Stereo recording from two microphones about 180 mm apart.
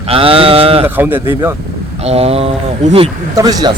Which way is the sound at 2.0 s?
35° right (ahead or behind).